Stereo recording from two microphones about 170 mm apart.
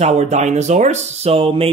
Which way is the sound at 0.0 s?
40° right (ahead or behind).